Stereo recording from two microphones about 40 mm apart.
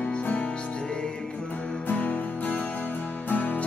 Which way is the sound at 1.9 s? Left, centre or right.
Left.